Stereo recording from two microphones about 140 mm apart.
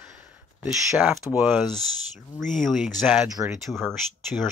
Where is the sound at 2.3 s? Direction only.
Centre (ahead or behind).